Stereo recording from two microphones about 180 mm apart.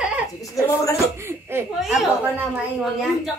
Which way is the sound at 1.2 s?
15° right (ahead or behind).